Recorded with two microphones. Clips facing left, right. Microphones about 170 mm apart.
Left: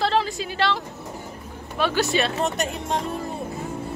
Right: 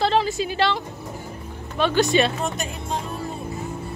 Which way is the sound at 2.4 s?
70° left (ahead or behind).